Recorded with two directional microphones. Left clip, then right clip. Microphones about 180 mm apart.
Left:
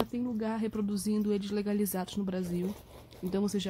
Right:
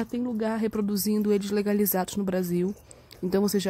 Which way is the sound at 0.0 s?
20° right (ahead or behind).